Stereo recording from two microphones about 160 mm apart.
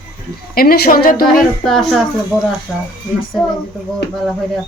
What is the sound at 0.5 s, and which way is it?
Speech, 70° left (ahead or behind).